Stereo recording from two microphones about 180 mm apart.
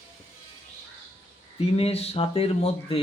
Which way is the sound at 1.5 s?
35° left (ahead or behind).